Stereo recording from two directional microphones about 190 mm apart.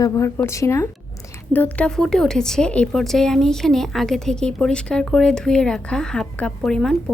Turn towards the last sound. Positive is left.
turn(degrees=0)  # may be behind; listen again after turning